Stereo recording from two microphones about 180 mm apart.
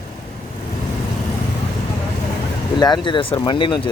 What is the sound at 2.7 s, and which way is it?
Speech, 25° left (ahead or behind).